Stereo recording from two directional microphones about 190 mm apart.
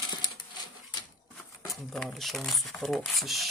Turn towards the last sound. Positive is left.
turn(degrees=0)  # may be behind; listen again after turning